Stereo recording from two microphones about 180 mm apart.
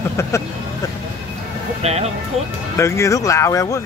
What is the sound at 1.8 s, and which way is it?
Speech, 35° right (ahead or behind).